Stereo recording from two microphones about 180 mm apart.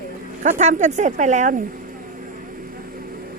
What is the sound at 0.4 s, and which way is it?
Speech, 40° right (ahead or behind).